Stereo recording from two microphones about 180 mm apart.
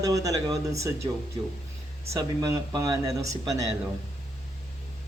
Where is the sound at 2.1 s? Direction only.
20° right (ahead or behind).